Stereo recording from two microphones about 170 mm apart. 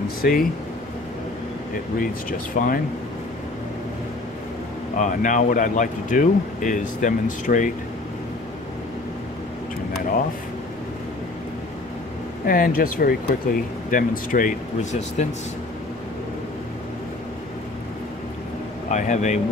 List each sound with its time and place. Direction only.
0.2 s speech: 55° left (ahead or behind)
2.0 s speech: 55° left (ahead or behind)
4.9 s speech: 50° left (ahead or behind)
12.4 s speech: 55° left (ahead or behind)
18.9 s speech: 45° left (ahead or behind)